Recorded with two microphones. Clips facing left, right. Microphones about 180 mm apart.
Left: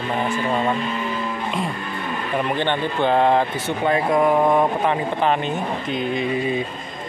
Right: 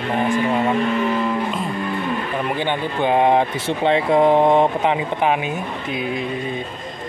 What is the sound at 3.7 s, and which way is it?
Speech, 25° right (ahead or behind).